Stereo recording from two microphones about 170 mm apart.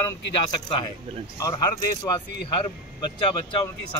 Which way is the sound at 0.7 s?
30° left (ahead or behind).